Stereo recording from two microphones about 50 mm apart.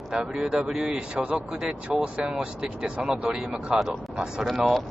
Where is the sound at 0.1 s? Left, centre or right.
Centre.